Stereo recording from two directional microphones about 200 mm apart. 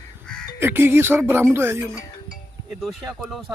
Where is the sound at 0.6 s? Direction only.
10° right (ahead or behind).